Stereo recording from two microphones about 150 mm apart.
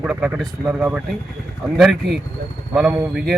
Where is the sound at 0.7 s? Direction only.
15° right (ahead or behind).